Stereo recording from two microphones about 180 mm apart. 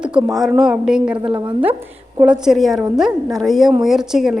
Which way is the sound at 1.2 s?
30° right (ahead or behind).